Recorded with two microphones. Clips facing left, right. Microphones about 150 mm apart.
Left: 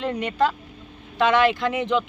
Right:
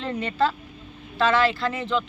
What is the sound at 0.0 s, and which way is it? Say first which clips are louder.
Speech: left 2 dB; 15° left (ahead or behind).